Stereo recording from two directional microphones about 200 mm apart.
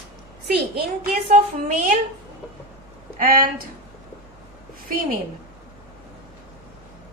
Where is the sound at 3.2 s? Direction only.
45° right (ahead or behind).